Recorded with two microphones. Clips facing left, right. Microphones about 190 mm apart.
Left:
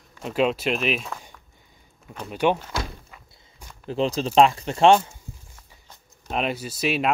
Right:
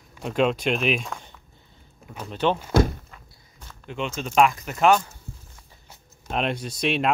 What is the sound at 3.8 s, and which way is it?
Speech, 35° left (ahead or behind).